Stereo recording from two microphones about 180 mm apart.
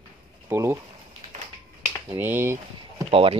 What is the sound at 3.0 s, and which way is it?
Speech, 30° right (ahead or behind).